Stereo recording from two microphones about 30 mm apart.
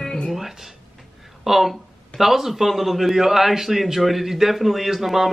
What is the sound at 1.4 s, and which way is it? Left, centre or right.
Speech, centre.